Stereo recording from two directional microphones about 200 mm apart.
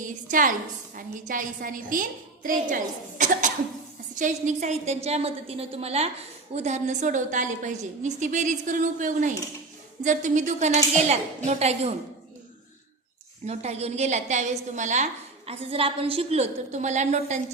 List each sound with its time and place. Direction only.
0.0 s a woman's voice: 40° right (ahead or behind)
13.4 s a woman's voice: 35° right (ahead or behind)